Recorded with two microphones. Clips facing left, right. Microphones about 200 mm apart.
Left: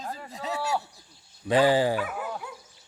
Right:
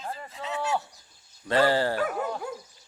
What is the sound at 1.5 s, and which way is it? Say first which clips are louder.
Speech: left 2 dB; 15° left (ahead or behind).